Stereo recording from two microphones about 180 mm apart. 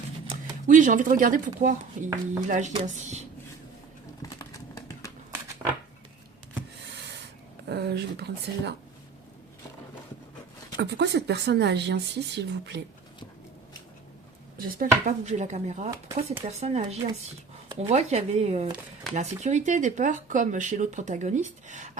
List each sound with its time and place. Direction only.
0.7 s speech: 45° right (ahead or behind)
7.7 s speech: 65° right (ahead or behind)
10.8 s speech: 70° right (ahead or behind)
14.6 s speech: 55° right (ahead or behind)
15.2 s speech: 40° right (ahead or behind)
15.9 s speech: 15° right (ahead or behind)
16.5 s speech: 40° right (ahead or behind)